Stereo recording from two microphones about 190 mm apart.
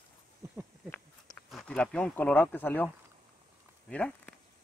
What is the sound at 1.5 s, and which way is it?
Speech, centre (ahead or behind).